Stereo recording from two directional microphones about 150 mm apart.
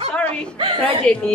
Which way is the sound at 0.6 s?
35° right (ahead or behind).